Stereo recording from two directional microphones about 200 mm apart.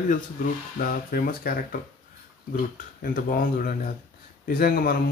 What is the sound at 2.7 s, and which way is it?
Speech, 45° left (ahead or behind).